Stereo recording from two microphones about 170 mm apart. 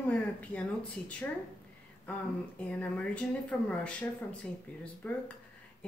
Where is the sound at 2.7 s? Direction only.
10° left (ahead or behind).